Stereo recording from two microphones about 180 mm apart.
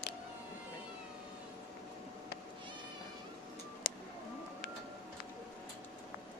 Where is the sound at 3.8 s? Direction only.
65° left (ahead or behind).